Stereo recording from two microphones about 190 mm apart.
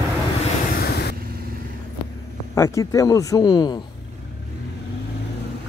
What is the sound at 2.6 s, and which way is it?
Speech, 15° left (ahead or behind).